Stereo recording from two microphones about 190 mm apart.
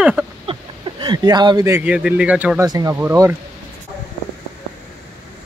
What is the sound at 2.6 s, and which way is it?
Speech, 20° right (ahead or behind).